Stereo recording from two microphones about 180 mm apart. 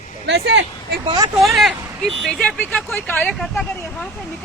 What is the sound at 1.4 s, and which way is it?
Speech, centre (ahead or behind).